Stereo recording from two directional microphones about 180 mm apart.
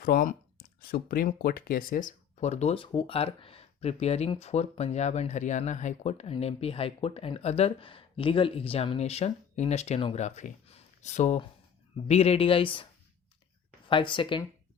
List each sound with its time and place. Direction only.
0.0 s speech: 50° left (ahead or behind); by 14.4 s 25° left (ahead or behind)